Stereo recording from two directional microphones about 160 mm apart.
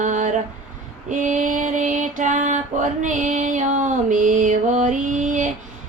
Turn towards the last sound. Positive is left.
turn(degrees=-50)  # may be behind; listen again after turning